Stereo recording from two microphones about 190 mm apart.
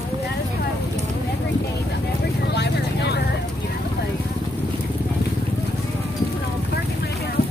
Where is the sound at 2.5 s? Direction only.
60° left (ahead or behind).